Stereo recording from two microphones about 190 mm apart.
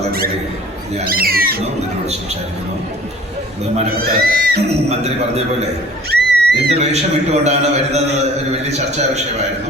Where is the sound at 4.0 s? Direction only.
50° right (ahead or behind).